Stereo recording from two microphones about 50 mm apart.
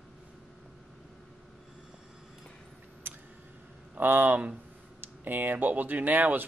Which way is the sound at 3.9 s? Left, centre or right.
Right.